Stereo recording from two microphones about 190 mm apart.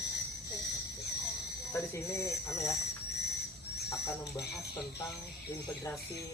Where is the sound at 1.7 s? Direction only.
15° left (ahead or behind).